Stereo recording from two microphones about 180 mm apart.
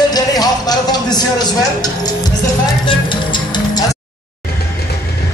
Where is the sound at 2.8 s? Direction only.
25° left (ahead or behind).